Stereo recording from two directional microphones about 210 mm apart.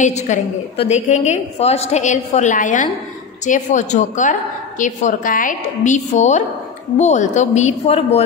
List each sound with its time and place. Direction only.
0.0 s a woman's voice: 35° left (ahead or behind)